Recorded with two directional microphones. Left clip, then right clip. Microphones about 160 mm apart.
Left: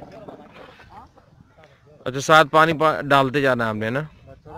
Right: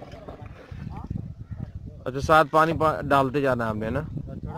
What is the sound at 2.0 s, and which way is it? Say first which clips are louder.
Speech: left 4 dB; 5° left (ahead or behind).